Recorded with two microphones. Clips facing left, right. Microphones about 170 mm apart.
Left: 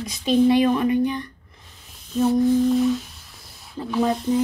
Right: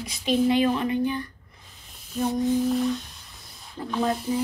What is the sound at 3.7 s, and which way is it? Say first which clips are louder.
Speech: left 4 dB; 5° left (ahead or behind).